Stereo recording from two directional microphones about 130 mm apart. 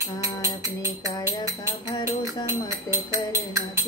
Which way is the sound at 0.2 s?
25° right (ahead or behind).